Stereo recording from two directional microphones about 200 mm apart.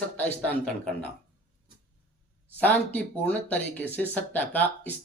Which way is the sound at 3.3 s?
5° left (ahead or behind).